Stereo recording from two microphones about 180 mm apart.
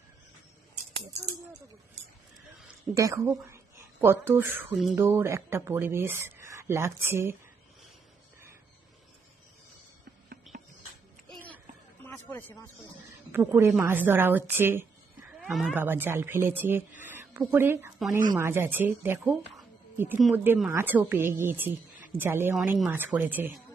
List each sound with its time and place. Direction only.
2.9 s speech: 15° right (ahead or behind)
10.5 s music: centre (ahead or behind)
12.0 s speech: 10° left (ahead or behind)
13.3 s speech: 15° right (ahead or behind)
15.4 s speech: centre (ahead or behind)
17.0 s a sound: 10° right (ahead or behind)
18.3 s speech: 15° right (ahead or behind)